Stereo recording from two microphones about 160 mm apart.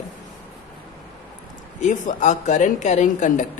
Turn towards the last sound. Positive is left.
turn(degrees=50)  # may be behind; listen again after turning